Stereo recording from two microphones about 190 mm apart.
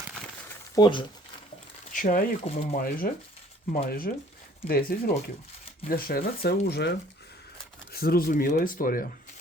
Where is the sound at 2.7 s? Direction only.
50° left (ahead or behind).